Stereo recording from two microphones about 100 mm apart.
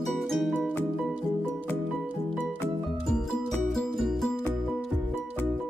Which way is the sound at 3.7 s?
Centre (ahead or behind).